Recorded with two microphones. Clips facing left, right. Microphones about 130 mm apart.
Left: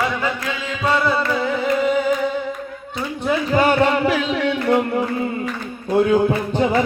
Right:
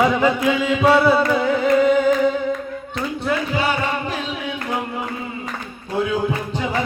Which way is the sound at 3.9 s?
90° left.